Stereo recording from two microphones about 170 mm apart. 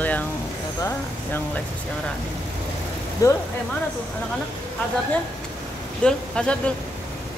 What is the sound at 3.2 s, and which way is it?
Speech, 20° left (ahead or behind).